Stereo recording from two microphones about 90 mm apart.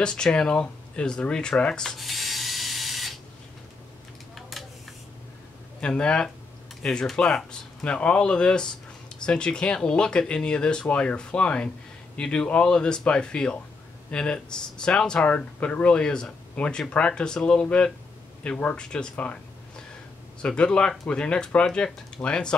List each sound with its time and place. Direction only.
0.0 s speech: 10° left (ahead or behind)
4.4 s a sound: centre (ahead or behind)
5.8 s speech: 10° left (ahead or behind)
20.4 s speech: 10° left (ahead or behind)